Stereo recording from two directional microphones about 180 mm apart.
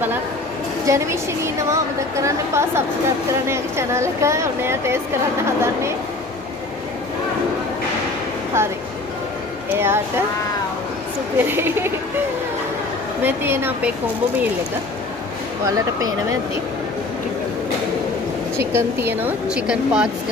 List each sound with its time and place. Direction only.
0.8 s a woman's voice: 15° right (ahead or behind)
8.6 s a woman's voice: 15° right (ahead or behind)
11.3 s a woman's voice: 10° right (ahead or behind)
13.2 s a woman's voice: 10° right (ahead or behind)
18.6 s a woman's voice: 15° right (ahead or behind)